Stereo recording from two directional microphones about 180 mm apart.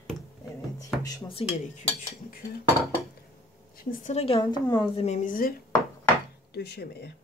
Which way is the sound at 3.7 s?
45° left (ahead or behind).